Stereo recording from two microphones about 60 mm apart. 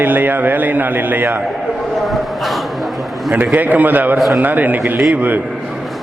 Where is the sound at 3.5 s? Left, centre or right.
Right.